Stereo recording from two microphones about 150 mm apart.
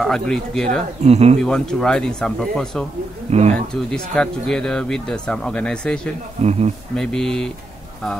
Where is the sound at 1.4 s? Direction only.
5° left (ahead or behind).